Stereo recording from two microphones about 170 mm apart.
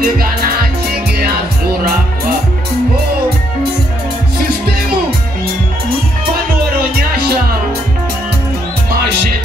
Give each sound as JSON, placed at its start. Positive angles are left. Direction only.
{"t": 0.0, "sound": "music", "side_deg": -60}
{"t": 7.0, "sound": "music", "side_deg": -65}